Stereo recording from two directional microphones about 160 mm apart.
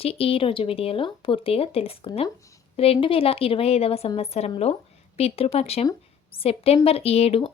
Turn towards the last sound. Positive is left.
turn(degrees=40)  # may be behind; listen again after turning